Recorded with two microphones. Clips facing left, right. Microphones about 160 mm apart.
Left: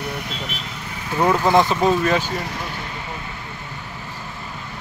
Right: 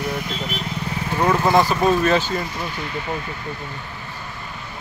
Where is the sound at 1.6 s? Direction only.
20° left (ahead or behind).